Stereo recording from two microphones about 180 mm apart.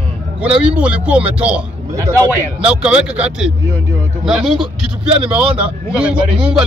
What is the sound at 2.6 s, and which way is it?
Speech, 5° right (ahead or behind).